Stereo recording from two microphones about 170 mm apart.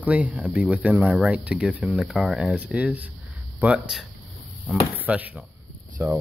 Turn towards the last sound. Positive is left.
turn(degrees=-15)  # may be behind; listen again after turning